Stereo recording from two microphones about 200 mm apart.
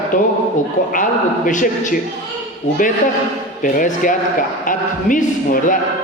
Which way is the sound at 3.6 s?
40° left (ahead or behind).